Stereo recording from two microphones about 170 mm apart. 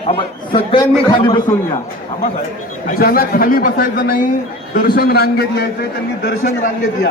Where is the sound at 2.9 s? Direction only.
60° left (ahead or behind).